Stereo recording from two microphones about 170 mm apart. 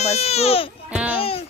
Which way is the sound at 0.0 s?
40° left (ahead or behind).